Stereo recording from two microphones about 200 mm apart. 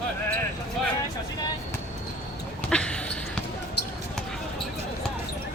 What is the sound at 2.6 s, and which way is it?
Basketball bounce, 5° left (ahead or behind).